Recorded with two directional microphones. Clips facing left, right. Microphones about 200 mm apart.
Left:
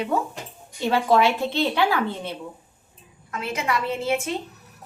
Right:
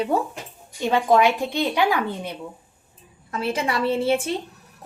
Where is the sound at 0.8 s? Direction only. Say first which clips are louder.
Right 1 dB; 15° right (ahead or behind).